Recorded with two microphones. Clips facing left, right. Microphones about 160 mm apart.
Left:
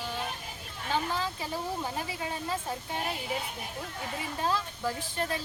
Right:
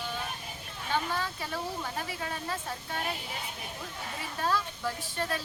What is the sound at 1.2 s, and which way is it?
Speech, 15° left (ahead or behind).